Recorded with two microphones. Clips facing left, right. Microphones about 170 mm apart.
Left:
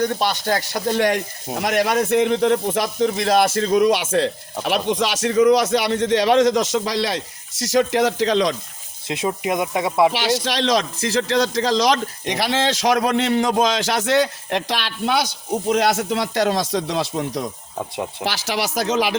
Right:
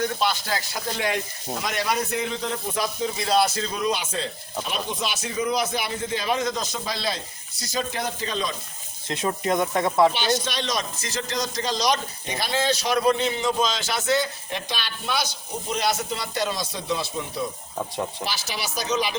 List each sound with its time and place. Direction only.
0.0 s speech: 40° left (ahead or behind)
1.5 s speech: 60° left (ahead or behind)
3.4 s speech: 50° left (ahead or behind)
3.9 s a man's voice: 80° left
9.0 s speech: 15° left (ahead or behind)
10.1 s speech: 90° left